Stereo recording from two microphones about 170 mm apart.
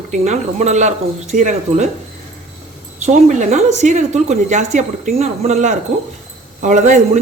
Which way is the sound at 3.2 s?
45° right (ahead or behind).